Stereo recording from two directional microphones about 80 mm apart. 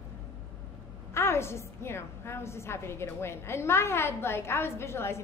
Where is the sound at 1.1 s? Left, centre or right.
Left.